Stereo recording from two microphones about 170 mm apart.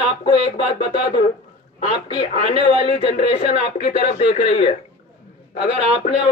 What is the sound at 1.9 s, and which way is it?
Speech, 25° left (ahead or behind).